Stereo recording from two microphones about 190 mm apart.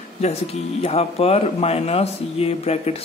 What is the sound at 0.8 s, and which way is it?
Speech, 30° left (ahead or behind).